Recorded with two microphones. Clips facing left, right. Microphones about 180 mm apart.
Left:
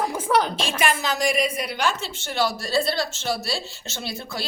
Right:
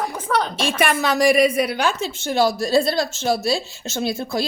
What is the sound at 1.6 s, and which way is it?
A woman's voice, 45° right (ahead or behind).